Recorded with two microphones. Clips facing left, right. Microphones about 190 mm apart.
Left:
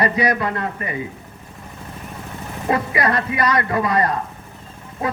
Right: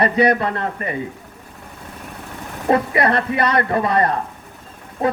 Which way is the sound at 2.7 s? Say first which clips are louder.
Right 3 dB; 30° right (ahead or behind).